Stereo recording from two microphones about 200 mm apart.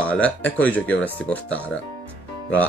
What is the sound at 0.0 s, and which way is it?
Speech, 5° left (ahead or behind).